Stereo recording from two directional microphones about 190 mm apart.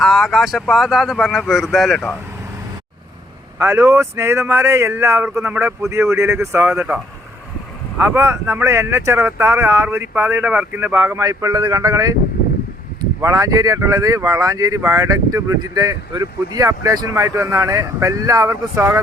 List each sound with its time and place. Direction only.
0.0 s speech: centre (ahead or behind)
3.6 s speech: 15° right (ahead or behind)
13.2 s speech: 20° right (ahead or behind)